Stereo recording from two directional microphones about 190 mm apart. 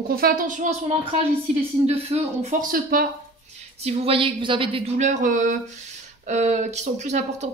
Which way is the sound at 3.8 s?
30° right (ahead or behind).